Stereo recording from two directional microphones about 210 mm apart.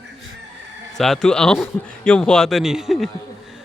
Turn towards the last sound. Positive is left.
turn(degrees=0)  # may be behind; listen again after turning